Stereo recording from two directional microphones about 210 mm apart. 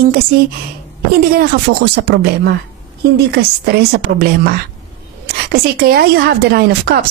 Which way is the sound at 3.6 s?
45° right (ahead or behind).